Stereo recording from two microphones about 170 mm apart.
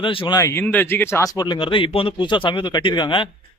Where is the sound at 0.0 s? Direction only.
30° left (ahead or behind).